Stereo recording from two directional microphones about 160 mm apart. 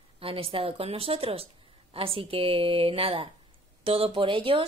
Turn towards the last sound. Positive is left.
turn(degrees=-30)  # may be behind; listen again after turning